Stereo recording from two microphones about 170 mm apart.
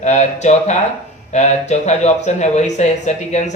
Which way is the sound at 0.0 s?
45° left (ahead or behind).